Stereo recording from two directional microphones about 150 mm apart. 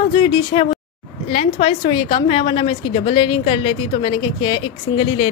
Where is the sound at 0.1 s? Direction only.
35° left (ahead or behind).